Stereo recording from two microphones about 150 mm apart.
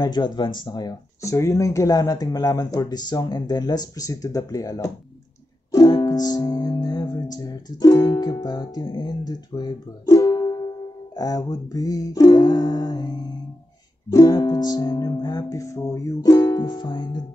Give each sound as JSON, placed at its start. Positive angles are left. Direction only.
{"t": 0.0, "sound": "speech", "side_deg": 30}
{"t": 5.7, "sound": "music", "side_deg": 25}
{"t": 11.1, "sound": "speech", "side_deg": 25}